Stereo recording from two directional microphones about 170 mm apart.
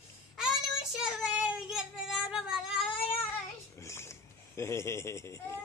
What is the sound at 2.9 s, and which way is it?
Cat, 35° left (ahead or behind).